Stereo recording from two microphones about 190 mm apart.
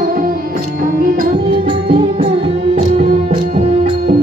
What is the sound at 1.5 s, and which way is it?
Music, 30° right (ahead or behind).